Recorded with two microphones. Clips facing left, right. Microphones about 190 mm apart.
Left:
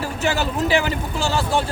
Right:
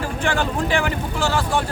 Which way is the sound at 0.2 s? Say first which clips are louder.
Left 1 dB; 5° left (ahead or behind).